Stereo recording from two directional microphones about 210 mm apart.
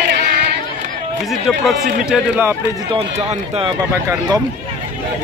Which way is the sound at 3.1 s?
30° right (ahead or behind).